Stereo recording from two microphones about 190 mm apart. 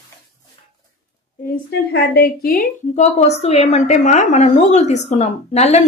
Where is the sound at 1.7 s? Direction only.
55° left (ahead or behind).